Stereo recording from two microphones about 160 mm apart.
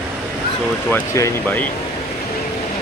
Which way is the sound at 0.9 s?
20° left (ahead or behind).